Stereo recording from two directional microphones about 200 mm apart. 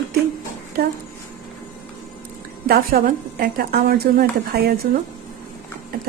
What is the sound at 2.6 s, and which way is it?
A woman's voice, 50° right (ahead or behind).